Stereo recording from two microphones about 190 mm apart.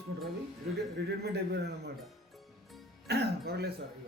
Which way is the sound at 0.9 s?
60° right (ahead or behind).